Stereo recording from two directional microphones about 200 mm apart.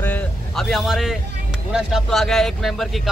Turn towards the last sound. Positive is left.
turn(degrees=0)  # may be behind; listen again after turning